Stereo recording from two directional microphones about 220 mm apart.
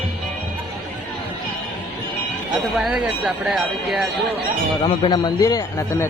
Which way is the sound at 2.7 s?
5° right (ahead or behind).